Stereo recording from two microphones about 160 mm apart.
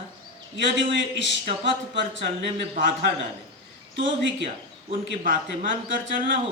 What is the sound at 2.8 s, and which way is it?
Speech, 55° right (ahead or behind).